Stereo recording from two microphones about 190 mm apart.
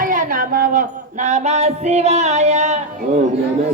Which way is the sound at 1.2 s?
35° right (ahead or behind).